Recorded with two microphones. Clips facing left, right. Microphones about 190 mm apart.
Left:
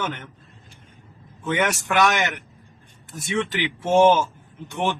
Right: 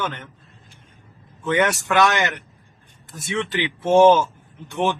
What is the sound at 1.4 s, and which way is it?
A man's voice, 15° left (ahead or behind).